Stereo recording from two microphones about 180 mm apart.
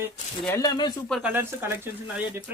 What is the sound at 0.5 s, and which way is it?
Speech, 25° left (ahead or behind).